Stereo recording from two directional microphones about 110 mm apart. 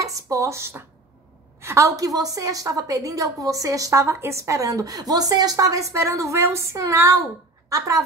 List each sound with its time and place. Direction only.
0.0 s a woman's voice: 30° right (ahead or behind)